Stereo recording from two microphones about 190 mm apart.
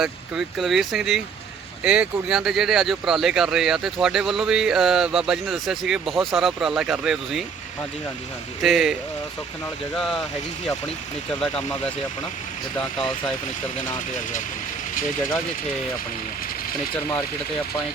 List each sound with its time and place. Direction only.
0.0 s speech: centre (ahead or behind)
8.6 s speech: centre (ahead or behind)
11.3 s speech: 5° left (ahead or behind)